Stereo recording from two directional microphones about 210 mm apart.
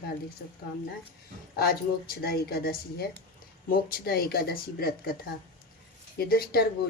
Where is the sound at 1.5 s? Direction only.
45° left (ahead or behind).